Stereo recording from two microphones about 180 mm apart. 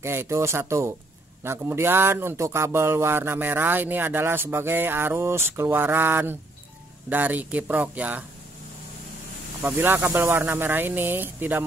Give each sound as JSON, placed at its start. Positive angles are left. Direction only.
{"t": 0.0, "sound": "speech", "side_deg": -15}
{"t": 9.6, "sound": "speech", "side_deg": -10}